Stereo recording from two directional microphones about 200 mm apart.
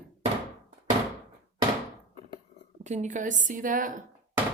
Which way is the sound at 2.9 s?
35° right (ahead or behind).